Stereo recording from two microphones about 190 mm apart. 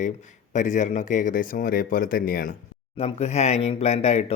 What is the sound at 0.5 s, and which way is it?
Speech, 40° left (ahead or behind).